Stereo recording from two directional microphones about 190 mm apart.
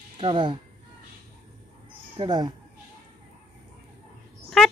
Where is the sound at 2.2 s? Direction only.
25° right (ahead or behind).